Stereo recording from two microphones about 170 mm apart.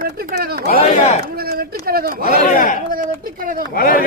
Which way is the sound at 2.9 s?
55° right (ahead or behind).